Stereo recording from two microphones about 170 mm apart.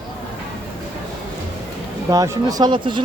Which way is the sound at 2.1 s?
20° right (ahead or behind).